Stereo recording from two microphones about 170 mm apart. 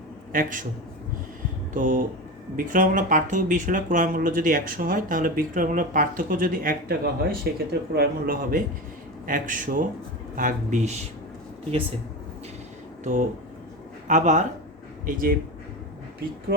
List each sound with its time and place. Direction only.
1.7 s speech: 50° right (ahead or behind)
14.1 s speech: 45° right (ahead or behind)